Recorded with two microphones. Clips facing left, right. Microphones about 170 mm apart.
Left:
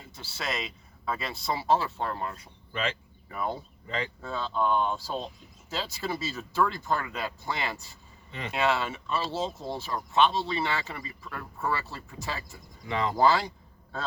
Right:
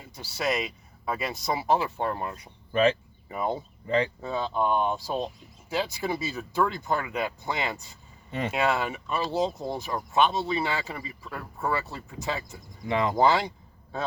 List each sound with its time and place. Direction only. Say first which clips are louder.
0.2 s speech: right 6 dB; 15° right (ahead or behind)
8.3 s speech: right 8 dB; 45° right (ahead or behind)
8.5 s speech: even; 15° right (ahead or behind)